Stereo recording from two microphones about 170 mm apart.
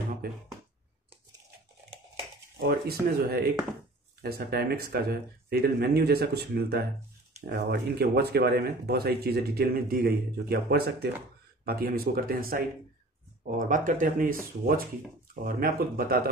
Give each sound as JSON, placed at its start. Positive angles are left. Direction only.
{"t": 0.2, "sound": "speech", "side_deg": -60}
{"t": 2.6, "sound": "speech", "side_deg": -65}